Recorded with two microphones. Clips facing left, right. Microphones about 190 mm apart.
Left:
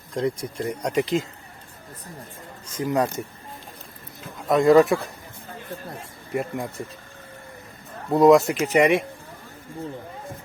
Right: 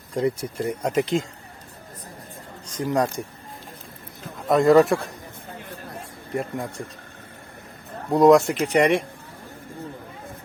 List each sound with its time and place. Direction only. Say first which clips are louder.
0.1 s speech: right 2 dB; 5° right (ahead or behind)
2.6 s speech: even; 10° left (ahead or behind)
4.4 s speech: even; centre (ahead or behind)
6.3 s speech: left 1 dB; 5° left (ahead or behind)
8.1 s speech: even; centre (ahead or behind)